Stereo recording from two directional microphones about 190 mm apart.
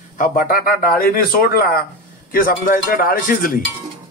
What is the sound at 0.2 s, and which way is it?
Speech, 45° left (ahead or behind).